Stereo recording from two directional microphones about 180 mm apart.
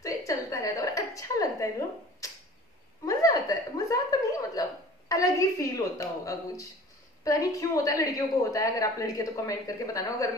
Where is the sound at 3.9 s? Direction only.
20° left (ahead or behind).